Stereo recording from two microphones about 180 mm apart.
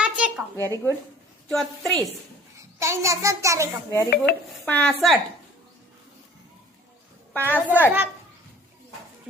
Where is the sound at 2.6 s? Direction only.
15° right (ahead or behind).